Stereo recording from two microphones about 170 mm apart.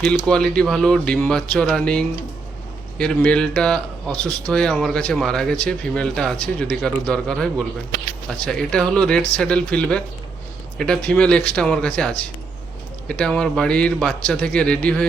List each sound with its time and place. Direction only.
0.0 s speech: 5° left (ahead or behind)